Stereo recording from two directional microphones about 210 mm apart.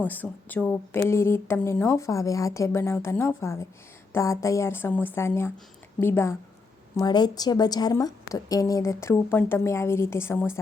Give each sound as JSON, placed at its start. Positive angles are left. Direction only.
{"t": 0.1, "sound": "a woman's voice", "side_deg": 10}